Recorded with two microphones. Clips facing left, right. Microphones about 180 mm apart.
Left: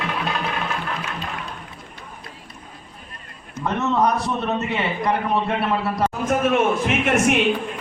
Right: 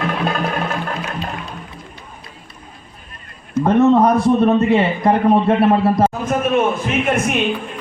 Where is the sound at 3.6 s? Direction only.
50° right (ahead or behind).